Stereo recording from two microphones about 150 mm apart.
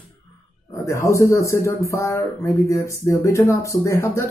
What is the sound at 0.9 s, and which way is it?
Speech, 20° left (ahead or behind).